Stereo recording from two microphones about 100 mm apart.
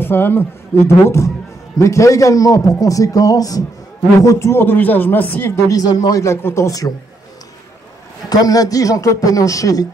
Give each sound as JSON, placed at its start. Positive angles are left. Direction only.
{"t": 0.0, "sound": "a man's voice", "side_deg": 20}
{"t": 5.7, "sound": "a man's voice", "side_deg": 40}
{"t": 6.2, "sound": "a man's voice", "side_deg": 25}
{"t": 8.3, "sound": "a man's voice", "side_deg": 40}